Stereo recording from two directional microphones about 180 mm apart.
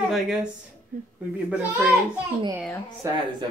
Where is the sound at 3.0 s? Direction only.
15° right (ahead or behind).